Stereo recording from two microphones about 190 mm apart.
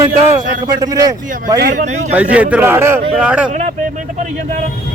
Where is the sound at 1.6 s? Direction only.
50° right (ahead or behind).